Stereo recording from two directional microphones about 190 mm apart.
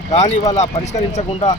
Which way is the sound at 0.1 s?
35° left (ahead or behind).